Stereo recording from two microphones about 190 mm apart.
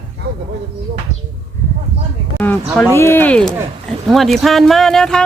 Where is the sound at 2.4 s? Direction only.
10° left (ahead or behind).